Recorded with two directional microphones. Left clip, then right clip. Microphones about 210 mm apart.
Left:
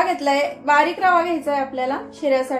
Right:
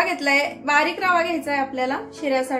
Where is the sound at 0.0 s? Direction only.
25° right (ahead or behind).